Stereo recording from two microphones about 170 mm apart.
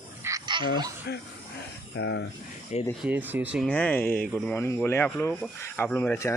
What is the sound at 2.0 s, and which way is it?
Speech, 90° left.